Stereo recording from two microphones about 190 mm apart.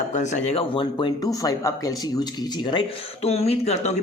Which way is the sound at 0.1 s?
40° left (ahead or behind).